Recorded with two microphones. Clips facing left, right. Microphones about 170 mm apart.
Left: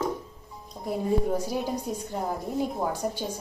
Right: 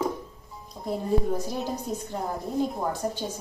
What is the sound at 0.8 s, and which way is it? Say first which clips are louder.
Speech: even; 10° left (ahead or behind).